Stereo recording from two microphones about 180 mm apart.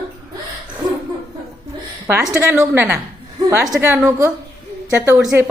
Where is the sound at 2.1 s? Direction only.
15° right (ahead or behind).